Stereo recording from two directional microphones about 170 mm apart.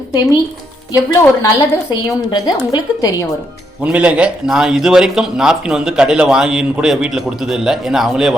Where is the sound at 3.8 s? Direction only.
10° right (ahead or behind).